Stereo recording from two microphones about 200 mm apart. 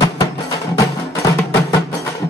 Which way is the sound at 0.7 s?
15° left (ahead or behind).